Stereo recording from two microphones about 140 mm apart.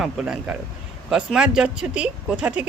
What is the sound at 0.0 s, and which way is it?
A man's voice, 5° right (ahead or behind).